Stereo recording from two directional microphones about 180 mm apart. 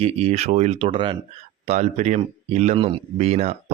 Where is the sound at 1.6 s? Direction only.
40° right (ahead or behind).